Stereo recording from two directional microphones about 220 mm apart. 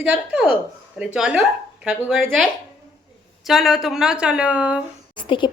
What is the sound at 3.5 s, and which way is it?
A woman's voice, centre (ahead or behind).